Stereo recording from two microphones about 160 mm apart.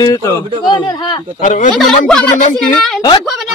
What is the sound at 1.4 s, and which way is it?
Speech, 55° left (ahead or behind).